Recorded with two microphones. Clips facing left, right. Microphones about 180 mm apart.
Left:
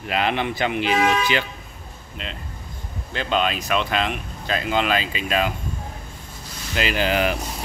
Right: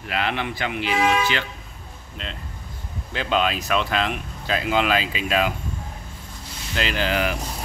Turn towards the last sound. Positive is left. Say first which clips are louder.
# left 2 dB
turn(degrees=15)  # may be behind; listen again after turning